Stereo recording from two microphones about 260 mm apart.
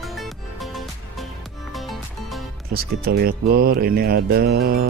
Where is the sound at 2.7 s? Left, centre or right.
Right.